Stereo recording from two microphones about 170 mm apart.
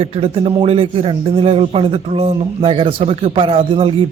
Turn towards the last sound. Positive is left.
turn(degrees=-30)  # may be behind; listen again after turning